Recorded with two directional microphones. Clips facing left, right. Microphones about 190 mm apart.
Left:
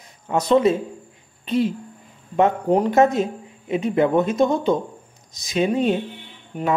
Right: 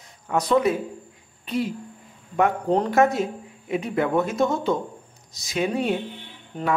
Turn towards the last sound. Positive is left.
turn(degrees=10)  # may be behind; listen again after turning